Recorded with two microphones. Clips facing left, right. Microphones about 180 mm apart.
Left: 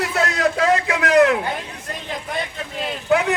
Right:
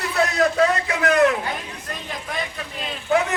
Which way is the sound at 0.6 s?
80° left.